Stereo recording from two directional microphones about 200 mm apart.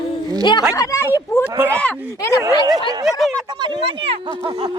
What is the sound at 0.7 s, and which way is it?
Speech, 15° left (ahead or behind).